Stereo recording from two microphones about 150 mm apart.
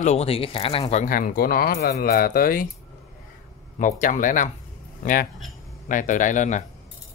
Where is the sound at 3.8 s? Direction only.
60° left (ahead or behind).